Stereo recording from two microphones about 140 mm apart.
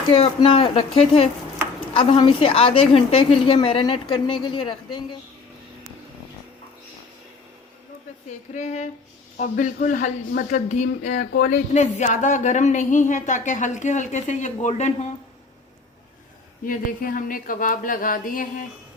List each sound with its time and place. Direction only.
0.1 s a woman's voice: 40° left (ahead or behind)
8.3 s speech: 55° left (ahead or behind)
9.4 s speech: 65° left (ahead or behind)
16.6 s speech: 80° left